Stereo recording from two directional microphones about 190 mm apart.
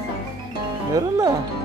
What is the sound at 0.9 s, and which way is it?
Music, 20° right (ahead or behind).